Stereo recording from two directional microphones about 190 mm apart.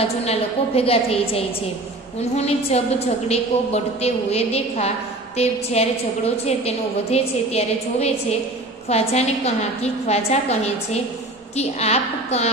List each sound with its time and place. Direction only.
0.2 s a woman's voice: 30° left (ahead or behind)